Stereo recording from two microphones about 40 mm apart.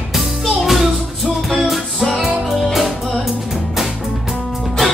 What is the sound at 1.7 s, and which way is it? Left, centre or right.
Music, centre.